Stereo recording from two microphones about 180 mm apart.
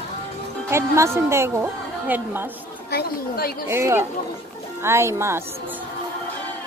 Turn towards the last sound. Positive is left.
turn(degrees=-15)  # may be behind; listen again after turning